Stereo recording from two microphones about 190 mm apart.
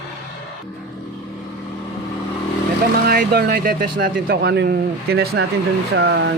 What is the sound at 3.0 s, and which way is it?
Speech, 55° right (ahead or behind).